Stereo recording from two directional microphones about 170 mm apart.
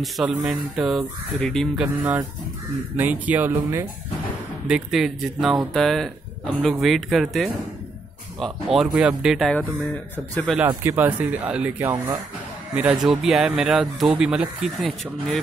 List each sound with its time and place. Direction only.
0.0 s speech: centre (ahead or behind)
3.0 s speech: 10° right (ahead or behind); by 10.5 s 10° left (ahead or behind)
10.8 s speech: 10° right (ahead or behind)
12.7 s speech: 5° right (ahead or behind)